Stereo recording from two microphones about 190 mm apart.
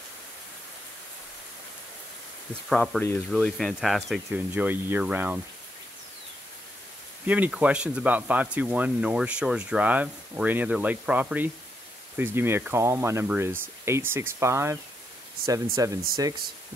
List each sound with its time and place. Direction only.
2.7 s speech: centre (ahead or behind)
7.2 s speech: 10° right (ahead or behind)